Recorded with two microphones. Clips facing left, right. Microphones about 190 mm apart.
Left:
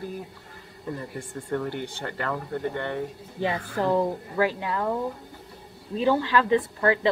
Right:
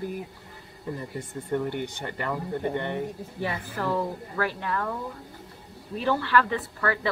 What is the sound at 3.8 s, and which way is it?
A woman's voice, 20° left (ahead or behind).